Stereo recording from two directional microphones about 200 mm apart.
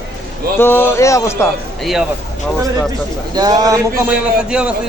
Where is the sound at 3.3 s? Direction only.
20° right (ahead or behind).